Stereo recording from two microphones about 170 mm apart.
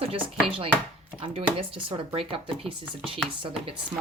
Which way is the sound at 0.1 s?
30° right (ahead or behind).